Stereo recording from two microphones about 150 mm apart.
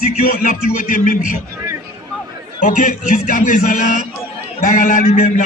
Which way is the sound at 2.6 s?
60° left (ahead or behind).